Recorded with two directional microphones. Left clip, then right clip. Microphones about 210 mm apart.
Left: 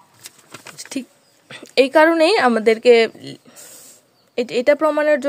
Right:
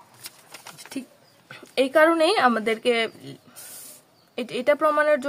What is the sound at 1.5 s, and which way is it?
A woman's voice, 35° left (ahead or behind).